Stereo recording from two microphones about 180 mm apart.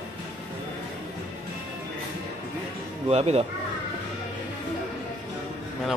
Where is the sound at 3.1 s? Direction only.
35° right (ahead or behind).